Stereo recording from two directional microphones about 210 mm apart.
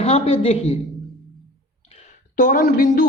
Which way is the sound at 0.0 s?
30° left (ahead or behind).